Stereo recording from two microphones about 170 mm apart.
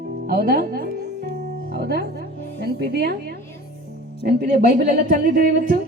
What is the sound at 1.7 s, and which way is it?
Speech, 65° right (ahead or behind).